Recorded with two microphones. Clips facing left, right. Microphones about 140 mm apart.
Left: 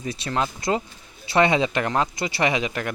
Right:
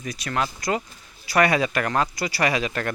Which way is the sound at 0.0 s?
25° left (ahead or behind).